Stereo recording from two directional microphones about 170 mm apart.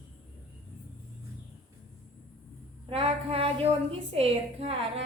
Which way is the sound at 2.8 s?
35° right (ahead or behind).